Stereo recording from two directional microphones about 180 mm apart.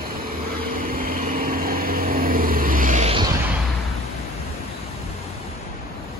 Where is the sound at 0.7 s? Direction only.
55° right (ahead or behind).